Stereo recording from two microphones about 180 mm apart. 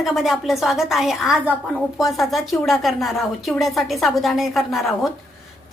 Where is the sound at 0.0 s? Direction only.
Centre (ahead or behind).